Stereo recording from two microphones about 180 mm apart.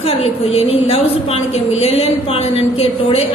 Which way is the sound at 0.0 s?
35° left (ahead or behind).